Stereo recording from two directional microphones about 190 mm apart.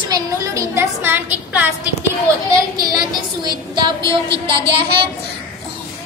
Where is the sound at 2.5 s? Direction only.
20° right (ahead or behind).